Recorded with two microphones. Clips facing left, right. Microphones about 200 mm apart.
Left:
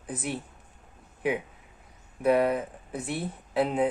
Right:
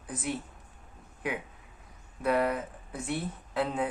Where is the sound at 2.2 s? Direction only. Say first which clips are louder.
Left 4 dB; 20° left (ahead or behind).